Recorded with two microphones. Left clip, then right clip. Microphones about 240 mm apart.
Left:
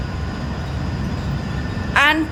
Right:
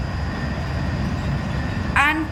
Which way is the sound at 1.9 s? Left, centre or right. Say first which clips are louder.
Left 3 dB; left.